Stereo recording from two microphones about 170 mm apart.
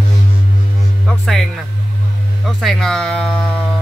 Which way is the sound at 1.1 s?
Centre (ahead or behind).